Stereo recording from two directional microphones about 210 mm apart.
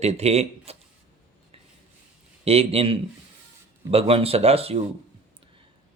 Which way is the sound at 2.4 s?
30° right (ahead or behind).